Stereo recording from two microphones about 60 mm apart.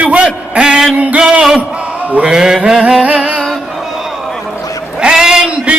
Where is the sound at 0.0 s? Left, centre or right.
Centre.